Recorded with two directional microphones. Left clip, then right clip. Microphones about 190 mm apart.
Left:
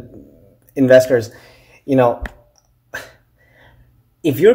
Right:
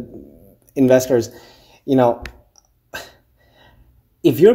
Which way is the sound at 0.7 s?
25° right (ahead or behind).